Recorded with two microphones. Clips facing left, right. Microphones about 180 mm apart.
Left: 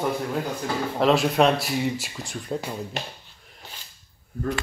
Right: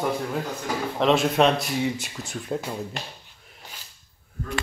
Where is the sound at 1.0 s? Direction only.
Centre (ahead or behind).